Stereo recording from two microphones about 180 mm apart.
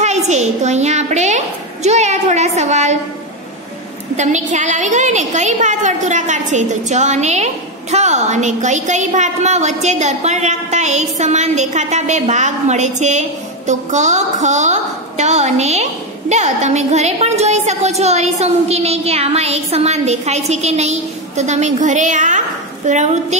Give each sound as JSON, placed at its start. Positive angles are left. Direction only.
{"t": 0.0, "sound": "a woman's voice", "side_deg": -40}
{"t": 4.2, "sound": "a woman's voice", "side_deg": -40}